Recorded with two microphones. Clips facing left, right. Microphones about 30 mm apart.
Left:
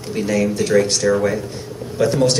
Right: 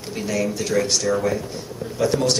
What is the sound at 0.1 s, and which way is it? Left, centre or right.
A man's voice, centre.